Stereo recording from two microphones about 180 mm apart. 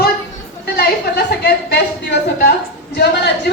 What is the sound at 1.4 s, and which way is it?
A woman's voice, 65° left (ahead or behind).